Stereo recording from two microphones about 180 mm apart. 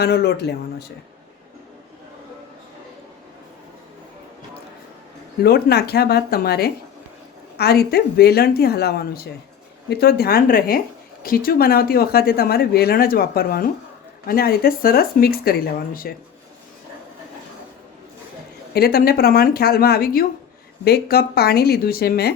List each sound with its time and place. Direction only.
0.0 s speech: 65° left (ahead or behind)
5.4 s speech: 60° left (ahead or behind)
18.7 s speech: 60° left (ahead or behind)